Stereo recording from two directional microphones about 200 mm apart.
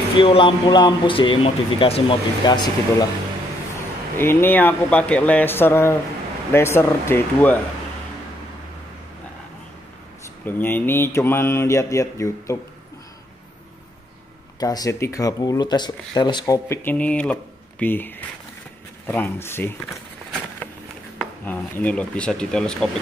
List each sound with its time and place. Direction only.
0.2 s a man's voice: 25° left (ahead or behind)
4.2 s speech: 10° left (ahead or behind)
10.4 s speech: 10° left (ahead or behind)
14.6 s speech: 20° left (ahead or behind)
21.2 s speech: 10° left (ahead or behind)